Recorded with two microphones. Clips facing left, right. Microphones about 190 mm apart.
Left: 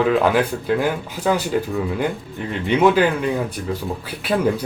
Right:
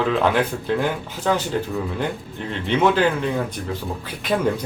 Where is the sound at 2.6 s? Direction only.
10° left (ahead or behind).